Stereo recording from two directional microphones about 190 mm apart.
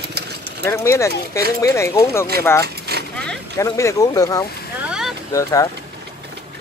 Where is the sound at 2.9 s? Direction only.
55° right (ahead or behind).